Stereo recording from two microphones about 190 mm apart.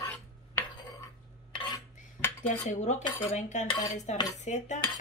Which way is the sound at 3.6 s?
25° left (ahead or behind).